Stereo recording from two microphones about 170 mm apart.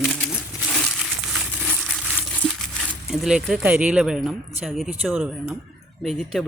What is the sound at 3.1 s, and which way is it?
Speech, 5° right (ahead or behind).